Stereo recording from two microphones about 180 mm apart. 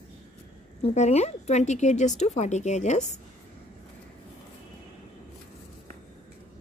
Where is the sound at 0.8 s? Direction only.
35° left (ahead or behind).